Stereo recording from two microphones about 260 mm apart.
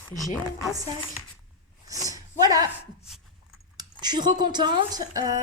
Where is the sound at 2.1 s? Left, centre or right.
Centre.